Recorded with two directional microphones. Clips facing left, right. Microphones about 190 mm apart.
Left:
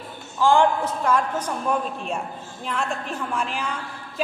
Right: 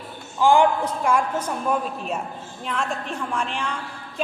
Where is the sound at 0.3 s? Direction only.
15° right (ahead or behind).